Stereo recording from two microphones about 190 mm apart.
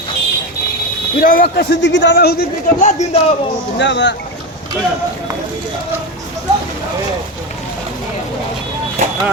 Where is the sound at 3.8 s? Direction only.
70° left (ahead or behind).